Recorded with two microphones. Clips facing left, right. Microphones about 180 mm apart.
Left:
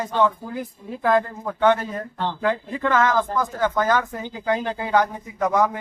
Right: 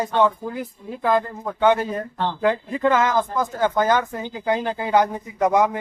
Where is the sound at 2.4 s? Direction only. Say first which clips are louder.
Right 4 dB; 20° right (ahead or behind).